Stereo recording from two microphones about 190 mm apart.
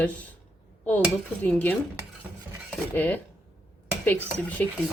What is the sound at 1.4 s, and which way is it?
Speech, 10° left (ahead or behind).